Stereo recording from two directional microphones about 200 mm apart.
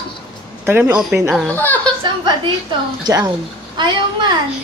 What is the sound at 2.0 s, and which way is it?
A woman's voice, 20° right (ahead or behind).